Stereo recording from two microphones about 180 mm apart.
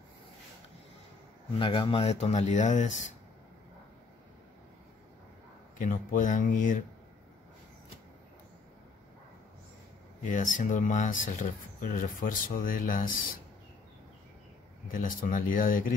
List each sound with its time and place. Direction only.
1.6 s speech: 30° left (ahead or behind)
5.8 s speech: 45° left (ahead or behind)
10.2 s speech: 45° left (ahead or behind)
14.9 s speech: 50° left (ahead or behind)